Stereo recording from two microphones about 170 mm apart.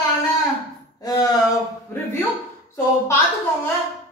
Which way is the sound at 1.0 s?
25° left (ahead or behind).